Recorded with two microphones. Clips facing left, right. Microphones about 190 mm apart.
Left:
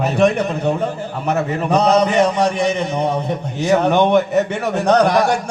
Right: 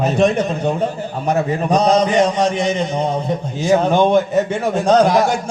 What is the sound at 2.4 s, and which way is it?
Music, 60° left (ahead or behind).